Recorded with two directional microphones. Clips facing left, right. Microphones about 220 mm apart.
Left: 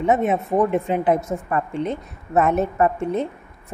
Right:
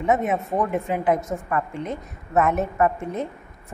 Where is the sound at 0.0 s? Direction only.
30° left (ahead or behind).